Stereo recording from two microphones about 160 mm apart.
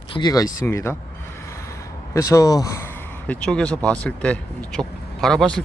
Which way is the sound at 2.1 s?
20° left (ahead or behind).